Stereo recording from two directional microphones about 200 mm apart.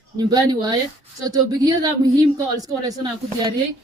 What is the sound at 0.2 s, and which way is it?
A woman's voice, 20° right (ahead or behind).